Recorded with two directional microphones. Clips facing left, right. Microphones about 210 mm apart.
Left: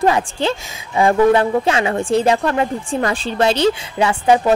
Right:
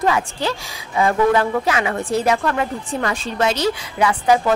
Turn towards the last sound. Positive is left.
turn(degrees=25)  # may be behind; listen again after turning